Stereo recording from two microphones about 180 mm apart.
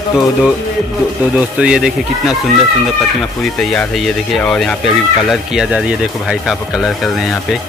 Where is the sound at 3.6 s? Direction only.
Centre (ahead or behind).